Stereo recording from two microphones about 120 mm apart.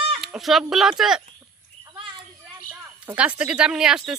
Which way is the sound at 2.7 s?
10° right (ahead or behind).